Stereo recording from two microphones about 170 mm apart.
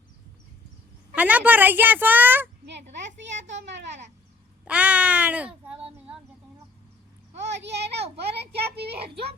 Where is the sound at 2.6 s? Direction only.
90° right.